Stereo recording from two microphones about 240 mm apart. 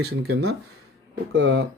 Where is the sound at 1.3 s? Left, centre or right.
Right.